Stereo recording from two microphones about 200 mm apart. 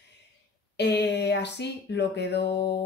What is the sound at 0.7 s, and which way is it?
Speech, 60° left (ahead or behind).